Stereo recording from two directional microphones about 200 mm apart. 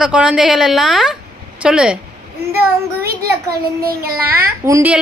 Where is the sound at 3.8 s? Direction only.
50° right (ahead or behind).